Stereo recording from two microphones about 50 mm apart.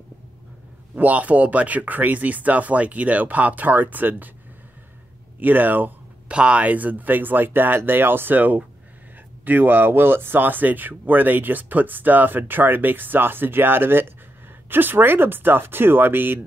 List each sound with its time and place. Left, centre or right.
0.9 s speech: right
5.4 s speech: right
6.2 s speech: right